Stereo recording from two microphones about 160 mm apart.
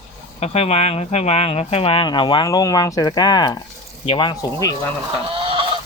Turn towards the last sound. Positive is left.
turn(degrees=-35)  # may be behind; listen again after turning